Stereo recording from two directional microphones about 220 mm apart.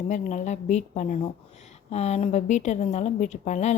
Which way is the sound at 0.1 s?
35° left (ahead or behind).